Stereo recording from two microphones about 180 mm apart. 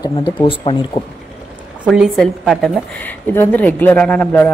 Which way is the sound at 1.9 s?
Centre (ahead or behind).